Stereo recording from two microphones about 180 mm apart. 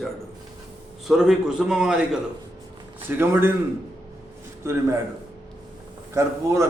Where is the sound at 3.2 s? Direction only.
10° right (ahead or behind).